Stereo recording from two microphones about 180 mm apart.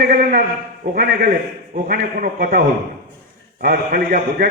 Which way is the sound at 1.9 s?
50° right (ahead or behind).